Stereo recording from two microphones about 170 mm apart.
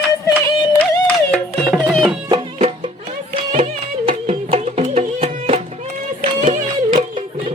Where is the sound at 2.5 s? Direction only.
35° right (ahead or behind).